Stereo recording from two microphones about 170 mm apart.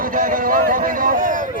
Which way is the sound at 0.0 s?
55° right (ahead or behind).